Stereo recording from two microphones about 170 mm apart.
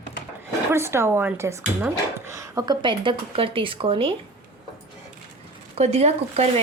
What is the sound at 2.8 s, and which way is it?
Speech, 30° right (ahead or behind).